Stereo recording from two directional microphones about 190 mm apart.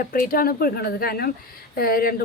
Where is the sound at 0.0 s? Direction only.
50° left (ahead or behind).